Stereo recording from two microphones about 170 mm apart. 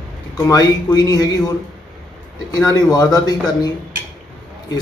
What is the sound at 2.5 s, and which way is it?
Speech, 20° left (ahead or behind).